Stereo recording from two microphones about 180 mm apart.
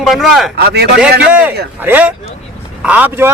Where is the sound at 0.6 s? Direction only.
60° right (ahead or behind).